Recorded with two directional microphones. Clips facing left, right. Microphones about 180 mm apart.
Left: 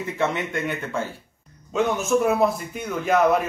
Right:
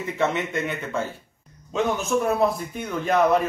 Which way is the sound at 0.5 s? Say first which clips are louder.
Even; centre (ahead or behind).